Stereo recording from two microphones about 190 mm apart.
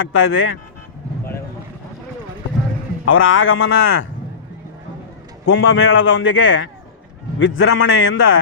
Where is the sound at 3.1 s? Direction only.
90° left.